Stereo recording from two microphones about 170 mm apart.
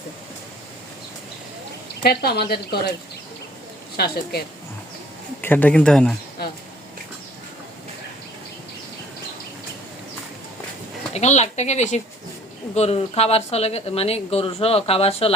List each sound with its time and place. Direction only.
2.0 s a woman's voice: 65° left (ahead or behind)
3.9 s a woman's voice: 65° left (ahead or behind)
5.4 s speech: 10° left (ahead or behind)
11.1 s speech: 40° left (ahead or behind)